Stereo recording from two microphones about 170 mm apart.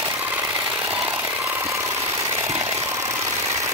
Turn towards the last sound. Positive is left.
turn(degrees=-15)  # may be behind; listen again after turning